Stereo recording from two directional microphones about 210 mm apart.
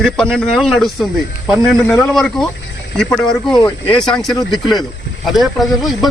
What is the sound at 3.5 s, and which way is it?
Speech, 20° left (ahead or behind).